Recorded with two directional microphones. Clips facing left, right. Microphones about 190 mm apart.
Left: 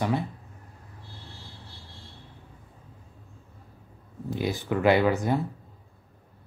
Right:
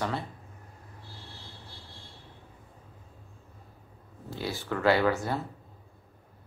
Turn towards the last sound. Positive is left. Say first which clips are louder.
# left 3 dB
turn(degrees=15)  # may be behind; listen again after turning